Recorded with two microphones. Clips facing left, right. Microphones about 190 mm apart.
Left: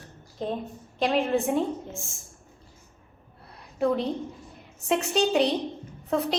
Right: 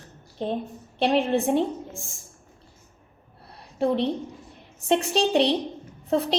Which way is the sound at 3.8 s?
30° right (ahead or behind).